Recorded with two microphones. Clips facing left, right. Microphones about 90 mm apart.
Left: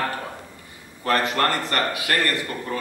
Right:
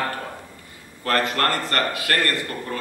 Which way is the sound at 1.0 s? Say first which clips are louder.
Left 1 dB; 15° left (ahead or behind).